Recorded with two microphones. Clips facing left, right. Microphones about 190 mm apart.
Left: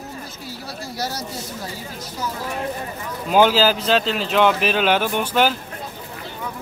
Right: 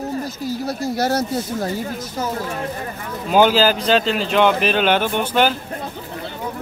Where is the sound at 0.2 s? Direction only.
50° right (ahead or behind).